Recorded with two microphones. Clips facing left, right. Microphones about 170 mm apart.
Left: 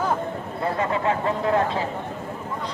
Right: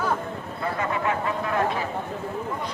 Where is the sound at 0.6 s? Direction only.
30° left (ahead or behind).